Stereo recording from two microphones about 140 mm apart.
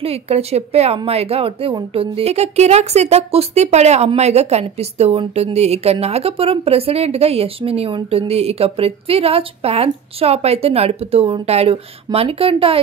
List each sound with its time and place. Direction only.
0.0 s speech: 45° right (ahead or behind)